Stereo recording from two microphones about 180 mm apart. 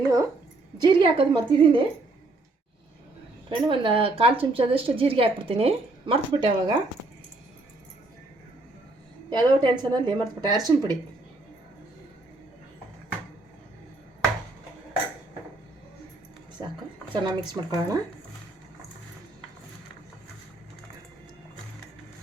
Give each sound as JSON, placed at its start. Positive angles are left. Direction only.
{"t": 0.8, "sound": "a woman's voice", "side_deg": -25}
{"t": 3.5, "sound": "a woman's voice", "side_deg": -30}
{"t": 9.3, "sound": "a woman's voice", "side_deg": -25}
{"t": 16.6, "sound": "a woman's voice", "side_deg": -25}